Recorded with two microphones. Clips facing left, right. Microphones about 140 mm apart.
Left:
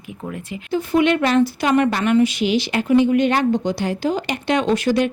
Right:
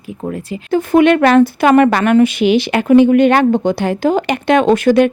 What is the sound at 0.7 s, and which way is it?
Speech, 50° right (ahead or behind).